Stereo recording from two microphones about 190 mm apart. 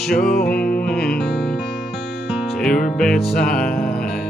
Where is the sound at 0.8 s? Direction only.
5° left (ahead or behind).